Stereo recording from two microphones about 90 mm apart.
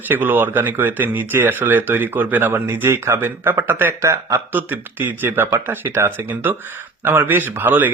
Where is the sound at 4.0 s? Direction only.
35° right (ahead or behind).